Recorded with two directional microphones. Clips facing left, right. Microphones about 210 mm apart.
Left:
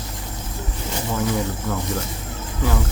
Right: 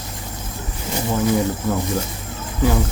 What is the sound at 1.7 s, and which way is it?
Speech, 15° right (ahead or behind).